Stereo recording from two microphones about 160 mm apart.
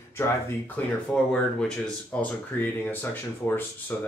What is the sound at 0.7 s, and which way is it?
Speech, 5° left (ahead or behind).